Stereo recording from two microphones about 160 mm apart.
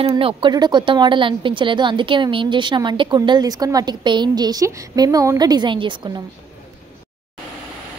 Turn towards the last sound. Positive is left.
turn(degrees=-30)  # may be behind; listen again after turning